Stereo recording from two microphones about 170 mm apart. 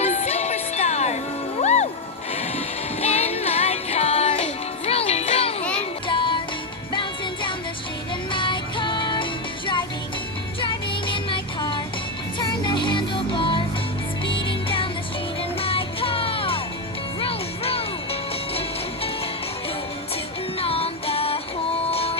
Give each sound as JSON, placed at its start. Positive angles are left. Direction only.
{"t": 0.0, "sound": "music", "side_deg": 40}
{"t": 10.6, "sound": "music", "side_deg": 30}
{"t": 20.6, "sound": "music", "side_deg": 35}